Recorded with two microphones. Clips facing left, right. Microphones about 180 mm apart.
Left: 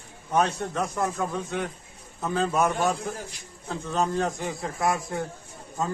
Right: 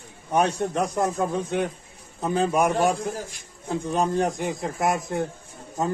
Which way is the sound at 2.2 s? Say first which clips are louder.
Right 3 dB; 20° right (ahead or behind).